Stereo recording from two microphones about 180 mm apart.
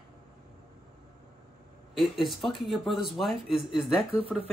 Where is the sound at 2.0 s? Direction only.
Centre (ahead or behind).